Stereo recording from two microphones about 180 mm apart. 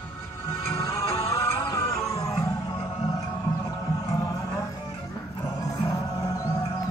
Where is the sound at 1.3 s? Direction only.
15° left (ahead or behind).